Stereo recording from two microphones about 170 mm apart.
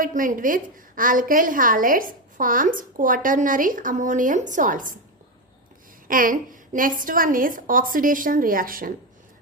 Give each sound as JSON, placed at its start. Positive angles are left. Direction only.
{"t": 0.0, "sound": "a woman's voice", "side_deg": -50}
{"t": 6.1, "sound": "a woman's voice", "side_deg": -55}